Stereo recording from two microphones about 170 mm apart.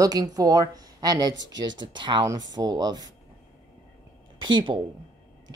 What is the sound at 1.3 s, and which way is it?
Speech, 90° right.